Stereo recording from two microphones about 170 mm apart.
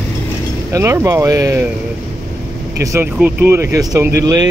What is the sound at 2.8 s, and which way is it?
Speech, 15° right (ahead or behind).